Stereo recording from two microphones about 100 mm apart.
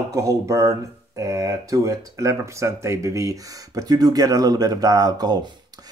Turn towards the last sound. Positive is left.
turn(degrees=-40)  # may be behind; listen again after turning